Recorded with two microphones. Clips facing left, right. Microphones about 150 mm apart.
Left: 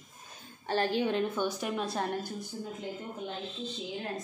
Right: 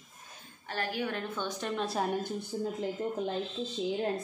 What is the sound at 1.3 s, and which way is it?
Speech, 10° left (ahead or behind).